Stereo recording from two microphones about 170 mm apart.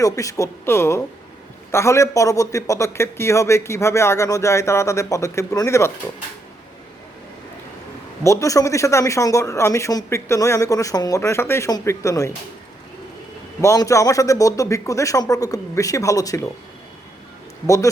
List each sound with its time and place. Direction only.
0.0 s a man's voice: 20° left (ahead or behind)
8.2 s a man's voice: 20° left (ahead or behind)
13.6 s a man's voice: 20° left (ahead or behind)